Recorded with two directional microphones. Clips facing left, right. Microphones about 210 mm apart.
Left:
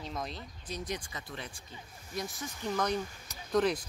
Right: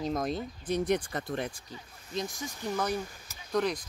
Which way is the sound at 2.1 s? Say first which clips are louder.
Right 3 dB; 15° right (ahead or behind).